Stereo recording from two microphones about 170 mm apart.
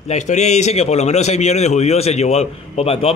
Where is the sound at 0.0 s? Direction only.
45° left (ahead or behind).